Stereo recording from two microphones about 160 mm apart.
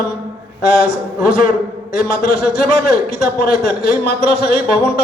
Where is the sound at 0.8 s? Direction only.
65° left (ahead or behind).